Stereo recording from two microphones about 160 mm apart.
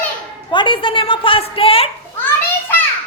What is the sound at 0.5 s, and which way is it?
A woman's voice, 30° left (ahead or behind).